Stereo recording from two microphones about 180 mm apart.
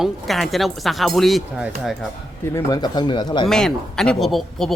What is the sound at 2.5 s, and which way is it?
Speech, 20° left (ahead or behind).